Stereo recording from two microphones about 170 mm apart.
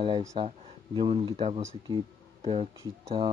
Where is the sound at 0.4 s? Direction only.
30° right (ahead or behind).